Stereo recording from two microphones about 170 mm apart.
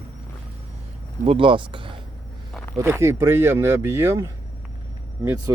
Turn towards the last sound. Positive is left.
turn(degrees=-20)  # may be behind; listen again after turning